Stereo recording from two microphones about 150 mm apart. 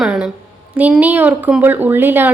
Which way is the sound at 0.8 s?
10° right (ahead or behind).